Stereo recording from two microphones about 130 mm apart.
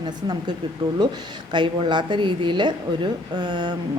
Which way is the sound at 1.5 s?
35° right (ahead or behind).